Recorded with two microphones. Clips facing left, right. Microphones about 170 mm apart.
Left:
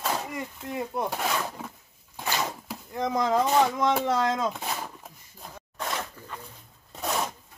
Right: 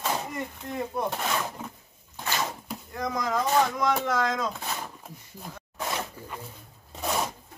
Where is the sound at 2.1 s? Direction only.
15° left (ahead or behind).